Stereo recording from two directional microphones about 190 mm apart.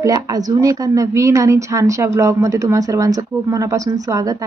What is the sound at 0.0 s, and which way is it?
A woman's voice, 20° right (ahead or behind).